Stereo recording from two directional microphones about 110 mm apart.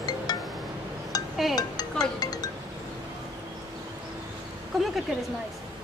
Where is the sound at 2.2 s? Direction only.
35° left (ahead or behind).